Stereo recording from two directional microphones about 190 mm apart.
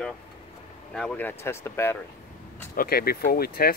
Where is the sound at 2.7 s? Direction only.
50° left (ahead or behind).